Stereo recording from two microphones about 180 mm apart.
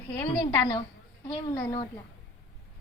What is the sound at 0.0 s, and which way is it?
Speech, 10° left (ahead or behind).